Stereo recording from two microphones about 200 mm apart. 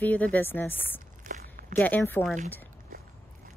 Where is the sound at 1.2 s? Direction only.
40° right (ahead or behind).